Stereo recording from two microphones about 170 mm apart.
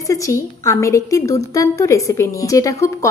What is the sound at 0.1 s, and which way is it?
A woman's voice, 15° left (ahead or behind).